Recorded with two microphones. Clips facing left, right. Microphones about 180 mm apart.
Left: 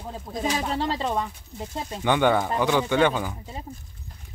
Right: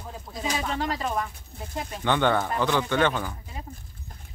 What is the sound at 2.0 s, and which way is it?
Speech, 10° left (ahead or behind).